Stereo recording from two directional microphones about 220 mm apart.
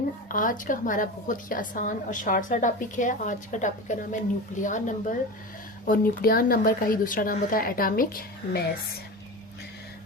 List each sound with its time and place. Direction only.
0.3 s a woman's voice: 35° left (ahead or behind)